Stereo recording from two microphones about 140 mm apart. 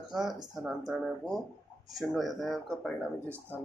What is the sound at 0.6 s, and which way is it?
Speech, centre (ahead or behind).